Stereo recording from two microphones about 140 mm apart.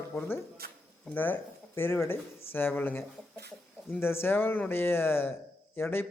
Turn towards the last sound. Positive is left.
turn(degrees=15)  # may be behind; listen again after turning